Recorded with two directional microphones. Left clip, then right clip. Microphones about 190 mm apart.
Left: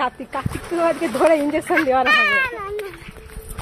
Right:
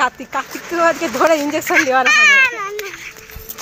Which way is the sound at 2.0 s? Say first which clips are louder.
Right 6 dB; 20° left (ahead or behind).